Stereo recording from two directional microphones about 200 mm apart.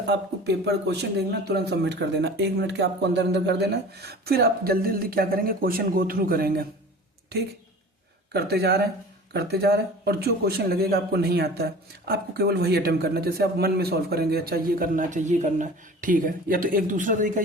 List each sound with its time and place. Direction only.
0.0 s a man's voice: 55° right (ahead or behind); by 17.4 s 40° right (ahead or behind)